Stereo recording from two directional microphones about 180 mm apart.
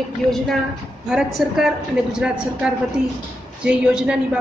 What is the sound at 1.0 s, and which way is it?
Speech, 5° right (ahead or behind).